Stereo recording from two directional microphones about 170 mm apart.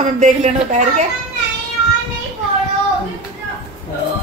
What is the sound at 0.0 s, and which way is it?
A woman's voice, 45° right (ahead or behind).